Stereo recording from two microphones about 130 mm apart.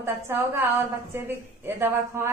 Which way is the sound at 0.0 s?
15° right (ahead or behind).